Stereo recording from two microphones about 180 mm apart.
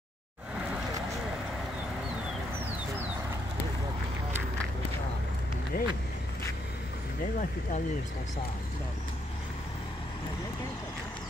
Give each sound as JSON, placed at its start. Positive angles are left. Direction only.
{"t": 5.7, "sound": "speech", "side_deg": 50}